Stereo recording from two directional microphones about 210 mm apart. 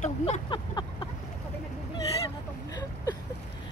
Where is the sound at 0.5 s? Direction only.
20° left (ahead or behind).